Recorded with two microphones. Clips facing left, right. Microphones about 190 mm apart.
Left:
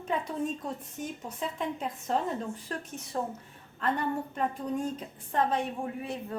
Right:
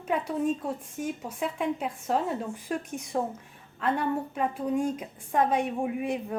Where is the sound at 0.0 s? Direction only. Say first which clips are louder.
Right 4 dB; 10° right (ahead or behind).